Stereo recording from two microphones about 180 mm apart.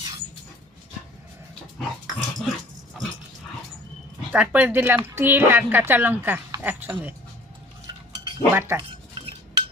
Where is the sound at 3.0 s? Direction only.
Centre (ahead or behind).